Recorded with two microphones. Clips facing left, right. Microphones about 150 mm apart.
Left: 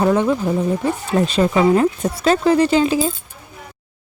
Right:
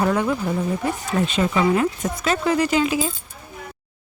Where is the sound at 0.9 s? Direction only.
35° left (ahead or behind).